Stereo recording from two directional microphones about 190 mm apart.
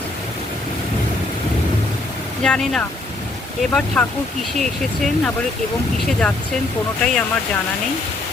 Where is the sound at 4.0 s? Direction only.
5° left (ahead or behind).